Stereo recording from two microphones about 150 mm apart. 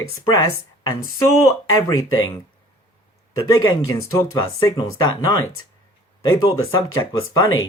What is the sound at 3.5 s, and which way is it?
Speech, 20° left (ahead or behind).